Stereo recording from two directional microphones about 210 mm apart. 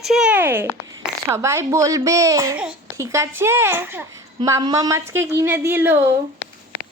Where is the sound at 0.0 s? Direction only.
5° right (ahead or behind).